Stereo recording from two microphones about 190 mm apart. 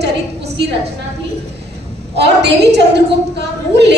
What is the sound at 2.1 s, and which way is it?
A woman's voice, 60° right (ahead or behind).